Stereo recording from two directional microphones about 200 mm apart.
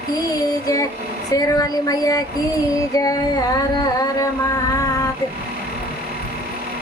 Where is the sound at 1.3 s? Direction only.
20° left (ahead or behind).